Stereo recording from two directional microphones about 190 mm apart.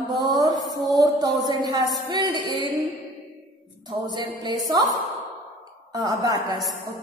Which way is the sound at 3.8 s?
20° right (ahead or behind).